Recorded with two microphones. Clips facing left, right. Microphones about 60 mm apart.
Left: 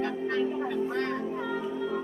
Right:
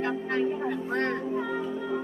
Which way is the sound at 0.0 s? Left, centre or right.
Right.